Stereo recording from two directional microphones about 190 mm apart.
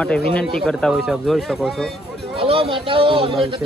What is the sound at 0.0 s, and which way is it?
Speech, 5° left (ahead or behind).